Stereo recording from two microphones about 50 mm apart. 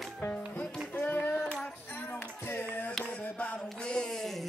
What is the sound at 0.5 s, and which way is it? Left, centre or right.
Music, left.